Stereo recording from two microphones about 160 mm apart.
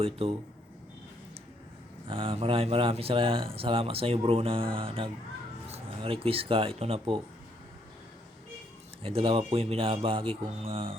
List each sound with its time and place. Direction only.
0.0 s speech: 35° right (ahead or behind)
2.0 s speech: 35° right (ahead or behind)
9.0 s speech: 35° right (ahead or behind)